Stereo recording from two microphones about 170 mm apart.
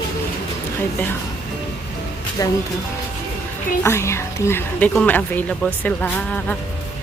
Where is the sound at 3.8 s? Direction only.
15° left (ahead or behind).